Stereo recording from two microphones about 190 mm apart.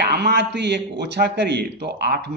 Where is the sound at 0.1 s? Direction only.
60° right (ahead or behind).